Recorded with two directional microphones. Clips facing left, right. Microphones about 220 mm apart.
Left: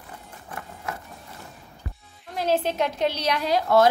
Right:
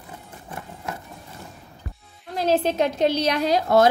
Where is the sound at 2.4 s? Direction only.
35° right (ahead or behind).